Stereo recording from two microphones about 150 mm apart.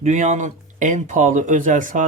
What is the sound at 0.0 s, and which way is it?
Speech, 50° right (ahead or behind).